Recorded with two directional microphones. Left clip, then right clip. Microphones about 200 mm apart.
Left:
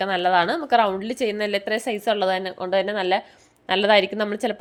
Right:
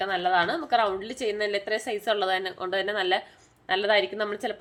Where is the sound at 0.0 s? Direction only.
40° left (ahead or behind).